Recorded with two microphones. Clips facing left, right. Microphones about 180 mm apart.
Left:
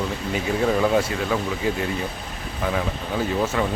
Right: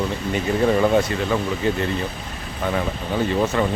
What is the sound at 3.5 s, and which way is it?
Speech, 5° left (ahead or behind).